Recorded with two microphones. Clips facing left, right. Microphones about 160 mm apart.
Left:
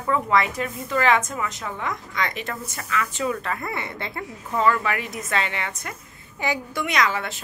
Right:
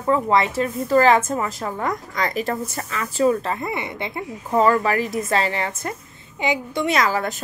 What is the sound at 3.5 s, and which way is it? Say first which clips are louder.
Speech: right 4 dB; 20° right (ahead or behind).